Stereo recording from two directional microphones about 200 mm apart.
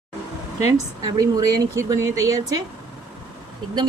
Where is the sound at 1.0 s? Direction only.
20° right (ahead or behind).